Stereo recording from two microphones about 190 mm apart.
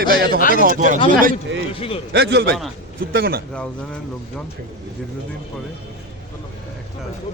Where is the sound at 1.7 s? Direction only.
30° left (ahead or behind).